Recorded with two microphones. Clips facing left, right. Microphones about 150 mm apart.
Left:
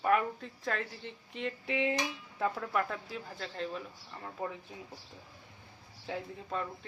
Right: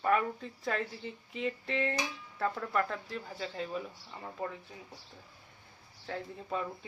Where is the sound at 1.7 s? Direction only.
10° left (ahead or behind).